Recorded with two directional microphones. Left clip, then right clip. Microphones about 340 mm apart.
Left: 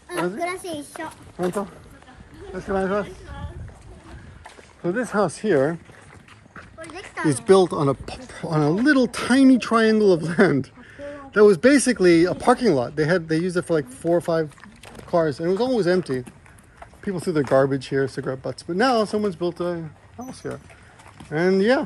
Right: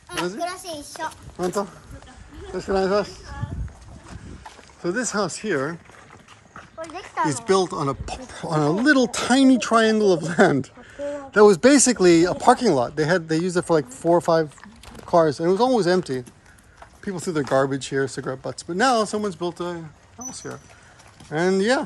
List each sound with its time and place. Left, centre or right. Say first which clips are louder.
2.5 s speech: right 3 dB; centre
4.8 s speech: left 2 dB; centre
6.8 s speech: right 3 dB; centre